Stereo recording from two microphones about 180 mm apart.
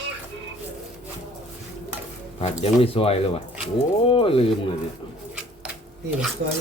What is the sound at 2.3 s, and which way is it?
Speech, 35° left (ahead or behind).